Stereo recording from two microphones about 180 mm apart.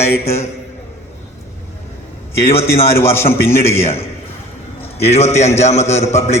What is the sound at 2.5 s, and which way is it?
A man's voice, 15° left (ahead or behind).